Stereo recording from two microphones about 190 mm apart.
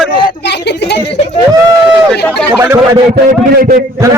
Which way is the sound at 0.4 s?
65° left (ahead or behind).